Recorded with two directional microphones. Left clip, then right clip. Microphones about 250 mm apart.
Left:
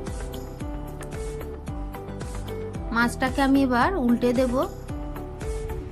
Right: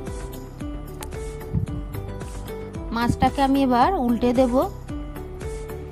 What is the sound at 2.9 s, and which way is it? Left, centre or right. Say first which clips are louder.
A woman's voice: right 2 dB; right.